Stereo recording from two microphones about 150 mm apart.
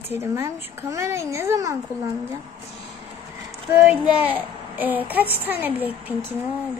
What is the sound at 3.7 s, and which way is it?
Music, 15° right (ahead or behind).